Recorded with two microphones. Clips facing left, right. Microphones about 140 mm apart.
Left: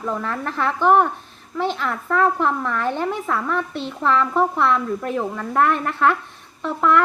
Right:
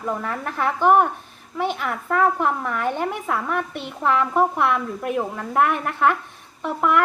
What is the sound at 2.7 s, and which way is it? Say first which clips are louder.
A woman's voice: left 1 dB; 10° right (ahead or behind).